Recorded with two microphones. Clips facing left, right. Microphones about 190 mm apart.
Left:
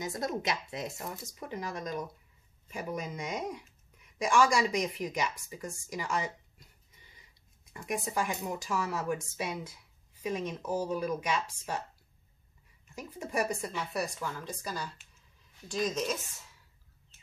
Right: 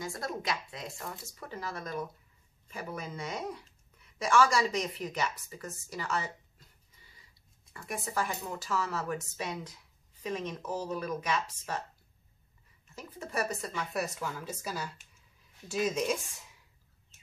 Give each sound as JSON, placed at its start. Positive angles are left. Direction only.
{"t": 0.0, "sound": "speech", "side_deg": 20}
{"t": 7.7, "sound": "speech", "side_deg": 15}
{"t": 12.9, "sound": "speech", "side_deg": 15}
{"t": 13.9, "sound": "speech", "side_deg": -5}